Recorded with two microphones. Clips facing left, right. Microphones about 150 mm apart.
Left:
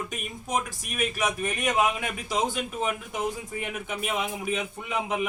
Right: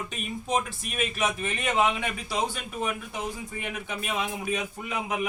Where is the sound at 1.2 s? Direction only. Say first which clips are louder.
Even; centre (ahead or behind).